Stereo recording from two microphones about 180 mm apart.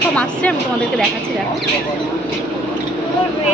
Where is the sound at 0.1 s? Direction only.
5° left (ahead or behind).